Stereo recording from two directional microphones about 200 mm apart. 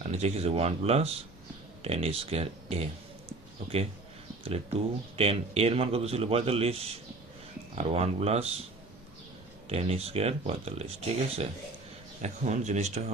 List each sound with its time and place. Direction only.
0.0 s speech: 35° right (ahead or behind)
4.4 s speech: 30° right (ahead or behind)
9.6 s speech: 30° right (ahead or behind)